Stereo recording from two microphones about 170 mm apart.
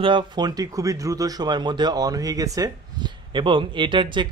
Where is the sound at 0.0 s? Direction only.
25° right (ahead or behind).